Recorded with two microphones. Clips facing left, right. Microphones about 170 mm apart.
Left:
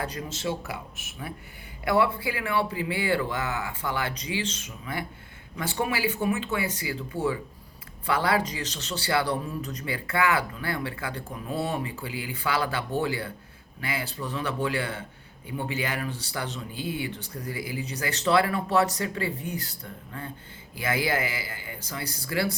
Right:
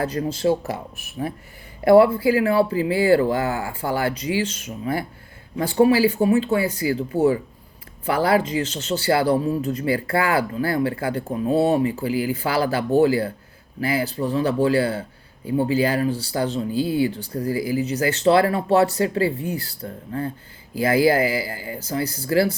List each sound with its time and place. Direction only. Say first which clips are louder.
0.0 s speech: right 10 dB; 35° right (ahead or behind)
4.4 s speech: right 7 dB; 30° left (ahead or behind)
4.6 s speech: right 9 dB; 40° right (ahead or behind)